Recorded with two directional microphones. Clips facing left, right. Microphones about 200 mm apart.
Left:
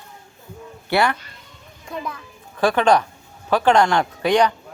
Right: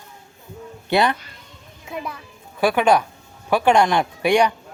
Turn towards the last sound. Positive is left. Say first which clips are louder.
# even
turn(degrees=-10)  # may be behind; listen again after turning